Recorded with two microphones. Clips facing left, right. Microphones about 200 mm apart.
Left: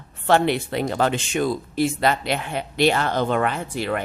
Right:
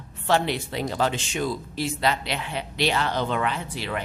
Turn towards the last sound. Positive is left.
turn(degrees=50)  # may be behind; listen again after turning